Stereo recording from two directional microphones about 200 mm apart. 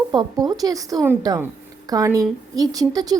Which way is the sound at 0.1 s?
20° right (ahead or behind).